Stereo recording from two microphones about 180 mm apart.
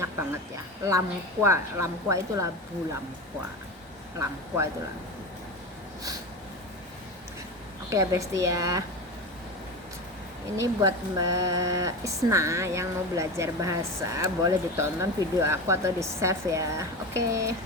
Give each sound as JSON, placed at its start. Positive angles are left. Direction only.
{"t": 0.9, "sound": "speech", "side_deg": -15}
{"t": 4.2, "sound": "speech", "side_deg": -15}
{"t": 7.9, "sound": "speech", "side_deg": -15}
{"t": 10.8, "sound": "speech", "side_deg": -20}